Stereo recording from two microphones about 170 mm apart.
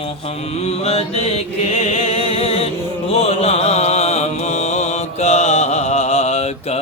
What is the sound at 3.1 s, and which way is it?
Mantra, 35° left (ahead or behind).